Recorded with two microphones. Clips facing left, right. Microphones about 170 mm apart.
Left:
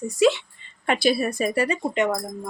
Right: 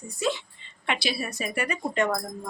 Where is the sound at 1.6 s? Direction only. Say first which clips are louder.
Left 2 dB; 25° left (ahead or behind).